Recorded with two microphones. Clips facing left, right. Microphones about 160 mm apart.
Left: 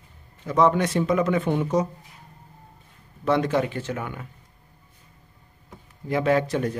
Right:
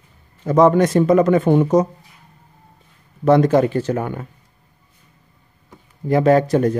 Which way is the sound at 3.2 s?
45° right (ahead or behind).